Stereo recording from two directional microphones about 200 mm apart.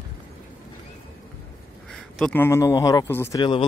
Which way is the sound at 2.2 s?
5° left (ahead or behind).